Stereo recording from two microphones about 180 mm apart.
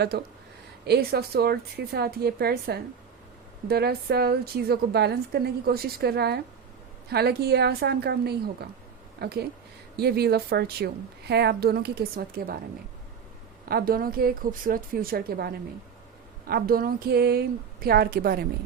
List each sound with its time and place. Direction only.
0.1 s a woman's voice: 65° right (ahead or behind)
13.7 s a woman's voice: 55° right (ahead or behind)